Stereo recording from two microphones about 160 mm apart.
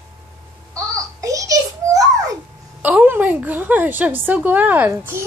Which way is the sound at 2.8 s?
10° right (ahead or behind).